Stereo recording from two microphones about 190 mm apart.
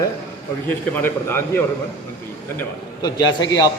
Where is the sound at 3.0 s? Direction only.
20° left (ahead or behind).